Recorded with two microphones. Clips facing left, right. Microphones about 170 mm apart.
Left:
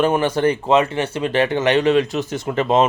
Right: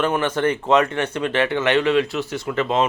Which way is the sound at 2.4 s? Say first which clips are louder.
Left 4 dB; 20° left (ahead or behind).